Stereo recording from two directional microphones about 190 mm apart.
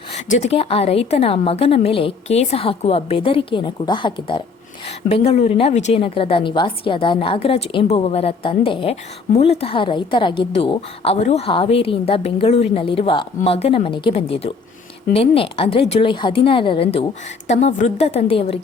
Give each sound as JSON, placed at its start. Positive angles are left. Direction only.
{"t": 0.3, "sound": "a woman's voice", "side_deg": 35}